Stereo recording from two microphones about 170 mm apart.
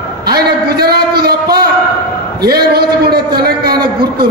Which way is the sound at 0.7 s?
65° right (ahead or behind).